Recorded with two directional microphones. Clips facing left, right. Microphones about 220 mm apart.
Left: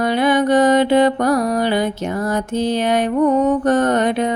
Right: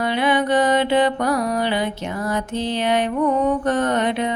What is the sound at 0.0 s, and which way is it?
Music, 45° left (ahead or behind).